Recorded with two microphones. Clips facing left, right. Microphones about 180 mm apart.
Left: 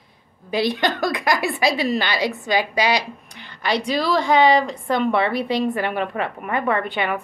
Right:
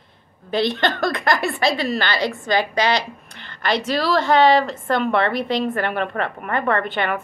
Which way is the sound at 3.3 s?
15° left (ahead or behind).